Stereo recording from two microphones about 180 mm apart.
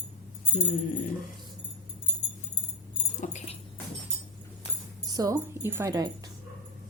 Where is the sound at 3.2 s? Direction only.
45° left (ahead or behind).